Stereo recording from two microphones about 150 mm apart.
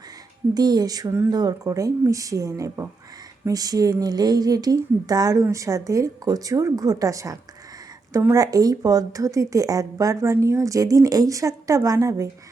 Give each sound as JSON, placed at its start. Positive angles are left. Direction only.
{"t": 0.5, "sound": "a woman's voice", "side_deg": -25}